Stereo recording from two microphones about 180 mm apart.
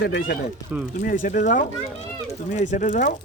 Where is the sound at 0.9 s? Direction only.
50° left (ahead or behind).